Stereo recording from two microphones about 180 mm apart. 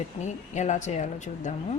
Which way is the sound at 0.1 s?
35° left (ahead or behind).